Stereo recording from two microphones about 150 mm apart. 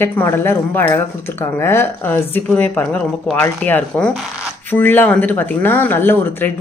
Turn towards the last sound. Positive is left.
turn(degrees=15)  # may be behind; listen again after turning